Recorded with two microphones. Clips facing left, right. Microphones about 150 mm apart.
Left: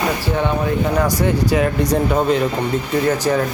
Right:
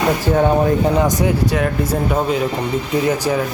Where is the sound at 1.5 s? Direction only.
Centre (ahead or behind).